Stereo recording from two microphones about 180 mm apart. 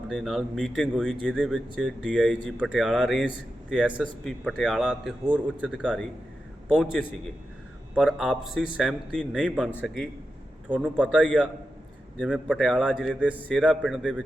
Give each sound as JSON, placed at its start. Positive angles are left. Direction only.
{"t": 0.1, "sound": "speech", "side_deg": 0}
{"t": 11.1, "sound": "speech", "side_deg": 5}